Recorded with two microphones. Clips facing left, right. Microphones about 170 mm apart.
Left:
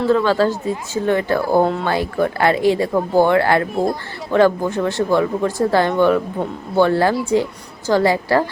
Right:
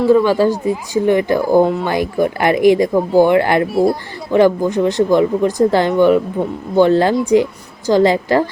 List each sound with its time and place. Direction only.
0.0 s a woman's voice: 15° right (ahead or behind)